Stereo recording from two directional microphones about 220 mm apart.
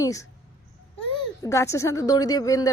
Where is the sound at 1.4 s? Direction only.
15° left (ahead or behind).